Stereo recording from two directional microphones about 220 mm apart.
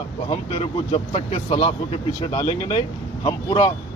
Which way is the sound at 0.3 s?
25° left (ahead or behind).